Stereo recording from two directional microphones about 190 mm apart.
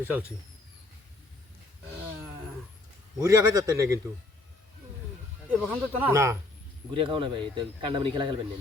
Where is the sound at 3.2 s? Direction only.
15° right (ahead or behind).